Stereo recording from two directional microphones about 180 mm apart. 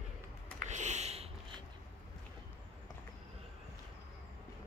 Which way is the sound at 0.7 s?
40° right (ahead or behind).